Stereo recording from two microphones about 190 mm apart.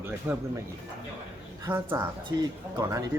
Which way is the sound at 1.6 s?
10° right (ahead or behind).